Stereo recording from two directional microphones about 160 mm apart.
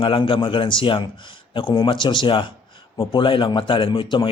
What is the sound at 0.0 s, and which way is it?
A man's voice, 35° left (ahead or behind).